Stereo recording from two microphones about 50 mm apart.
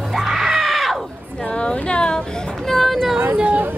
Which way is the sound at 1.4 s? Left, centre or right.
Left.